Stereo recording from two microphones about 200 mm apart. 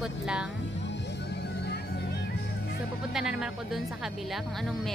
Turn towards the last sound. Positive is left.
turn(degrees=0)  # may be behind; listen again after turning